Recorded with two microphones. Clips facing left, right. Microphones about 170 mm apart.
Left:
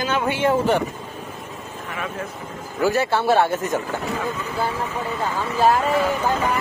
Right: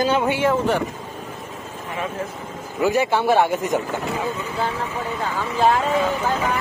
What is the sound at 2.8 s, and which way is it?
Speech, 15° right (ahead or behind).